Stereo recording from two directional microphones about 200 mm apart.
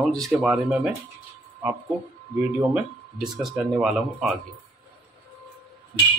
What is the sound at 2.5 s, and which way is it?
Speech, 5° right (ahead or behind).